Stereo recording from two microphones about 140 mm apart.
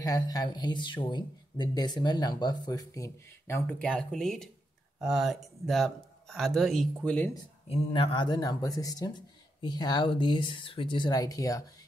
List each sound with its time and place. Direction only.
0.0 s speech: 25° left (ahead or behind); by 7.2 s 5° left (ahead or behind)
7.6 s speech: 45° left (ahead or behind); by 11.6 s 25° left (ahead or behind)